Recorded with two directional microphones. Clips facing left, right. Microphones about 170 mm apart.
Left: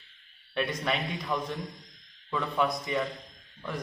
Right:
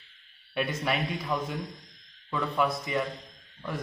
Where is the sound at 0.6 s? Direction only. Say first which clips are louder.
Right 1 dB; 5° right (ahead or behind).